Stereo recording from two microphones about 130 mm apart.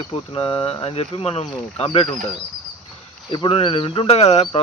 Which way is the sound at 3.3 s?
40° left (ahead or behind).